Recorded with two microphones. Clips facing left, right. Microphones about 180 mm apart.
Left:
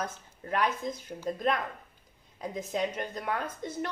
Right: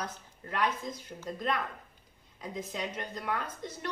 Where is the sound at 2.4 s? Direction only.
50° left (ahead or behind).